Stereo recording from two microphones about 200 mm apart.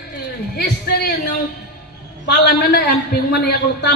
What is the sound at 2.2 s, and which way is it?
A man's voice, 55° left (ahead or behind).